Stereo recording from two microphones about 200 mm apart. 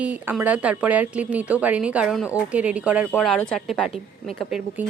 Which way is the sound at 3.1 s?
5° left (ahead or behind).